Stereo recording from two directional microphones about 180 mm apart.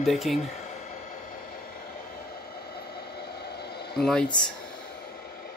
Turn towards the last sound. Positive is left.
turn(degrees=5)  # may be behind; listen again after turning